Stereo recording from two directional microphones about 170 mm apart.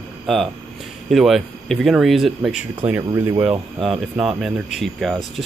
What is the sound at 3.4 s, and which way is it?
Speech, centre (ahead or behind).